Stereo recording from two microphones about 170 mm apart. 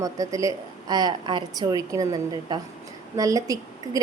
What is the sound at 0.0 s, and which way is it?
A woman's voice, 20° right (ahead or behind).